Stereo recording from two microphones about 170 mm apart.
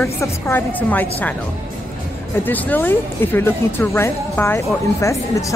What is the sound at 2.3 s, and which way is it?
A woman's voice, 10° left (ahead or behind).